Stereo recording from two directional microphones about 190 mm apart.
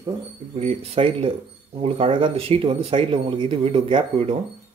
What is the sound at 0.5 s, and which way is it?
Speech, 30° right (ahead or behind).